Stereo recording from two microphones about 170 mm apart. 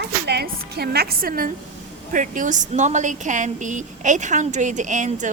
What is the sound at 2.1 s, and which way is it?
A woman's voice, 50° right (ahead or behind).